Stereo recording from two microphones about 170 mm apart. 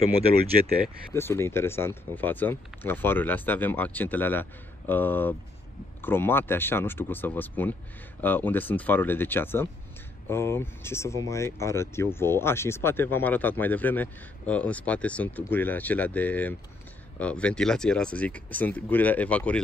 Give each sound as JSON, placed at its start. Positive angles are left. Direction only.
{"t": 1.1, "sound": "speech", "side_deg": 15}